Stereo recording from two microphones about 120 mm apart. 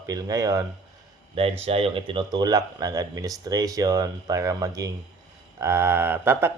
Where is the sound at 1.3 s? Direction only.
55° right (ahead or behind).